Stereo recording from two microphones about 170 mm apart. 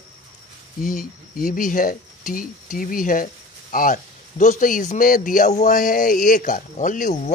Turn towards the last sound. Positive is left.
turn(degrees=50)  # may be behind; listen again after turning